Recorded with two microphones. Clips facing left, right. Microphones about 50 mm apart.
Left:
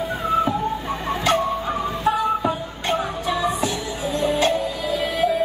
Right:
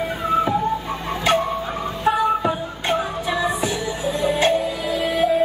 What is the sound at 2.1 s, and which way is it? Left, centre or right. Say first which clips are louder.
Music: right 2 dB; centre.